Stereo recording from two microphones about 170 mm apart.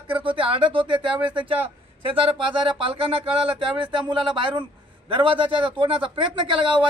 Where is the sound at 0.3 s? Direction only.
30° right (ahead or behind).